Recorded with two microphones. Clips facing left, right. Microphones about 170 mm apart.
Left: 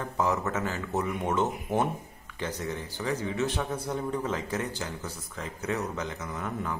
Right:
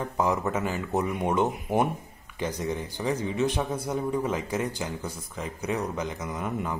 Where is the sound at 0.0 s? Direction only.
15° right (ahead or behind).